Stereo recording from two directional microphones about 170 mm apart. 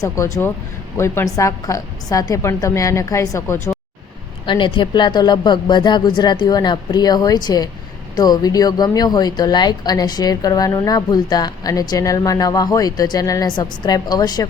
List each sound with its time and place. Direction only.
0.0 s a woman's voice: 20° left (ahead or behind)
4.4 s speech: 30° left (ahead or behind)